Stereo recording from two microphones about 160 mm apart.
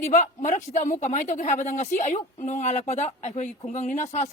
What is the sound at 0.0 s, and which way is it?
Speech, 50° left (ahead or behind).